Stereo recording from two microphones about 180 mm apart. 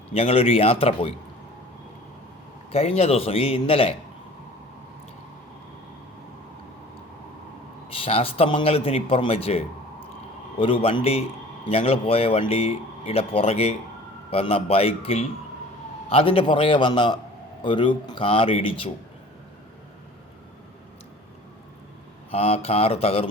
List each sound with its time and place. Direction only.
0.1 s a man's voice: 35° left (ahead or behind)
2.7 s a man's voice: 35° left (ahead or behind)
7.9 s a man's voice: 30° left (ahead or behind)
22.3 s a man's voice: 30° left (ahead or behind)